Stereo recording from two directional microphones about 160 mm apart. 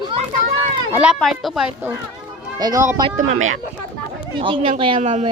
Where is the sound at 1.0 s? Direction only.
Centre (ahead or behind).